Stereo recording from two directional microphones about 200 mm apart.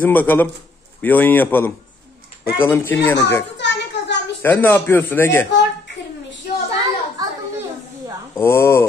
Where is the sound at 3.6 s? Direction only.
60° left (ahead or behind).